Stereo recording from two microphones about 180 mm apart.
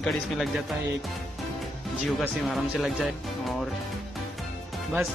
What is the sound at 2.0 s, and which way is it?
Speech, centre (ahead or behind).